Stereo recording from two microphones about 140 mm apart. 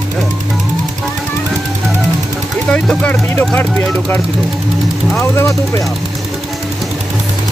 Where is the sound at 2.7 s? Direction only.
10° left (ahead or behind).